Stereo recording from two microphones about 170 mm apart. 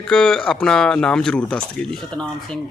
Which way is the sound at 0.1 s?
5° left (ahead or behind).